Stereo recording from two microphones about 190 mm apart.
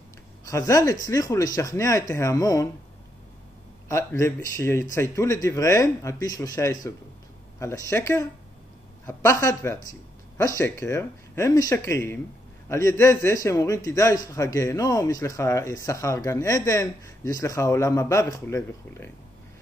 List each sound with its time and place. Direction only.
0.5 s a man's voice: 15° left (ahead or behind)
3.9 s a man's voice: 15° left (ahead or behind)